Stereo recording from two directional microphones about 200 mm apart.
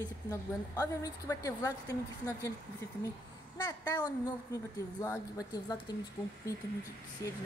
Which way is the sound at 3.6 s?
20° left (ahead or behind).